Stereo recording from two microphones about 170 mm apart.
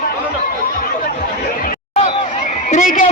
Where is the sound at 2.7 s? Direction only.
50° left (ahead or behind).